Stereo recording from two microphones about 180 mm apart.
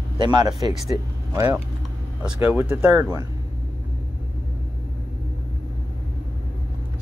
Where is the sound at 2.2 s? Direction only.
5° right (ahead or behind).